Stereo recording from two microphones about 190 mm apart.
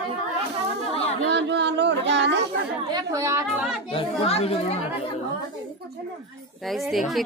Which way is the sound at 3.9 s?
30° left (ahead or behind).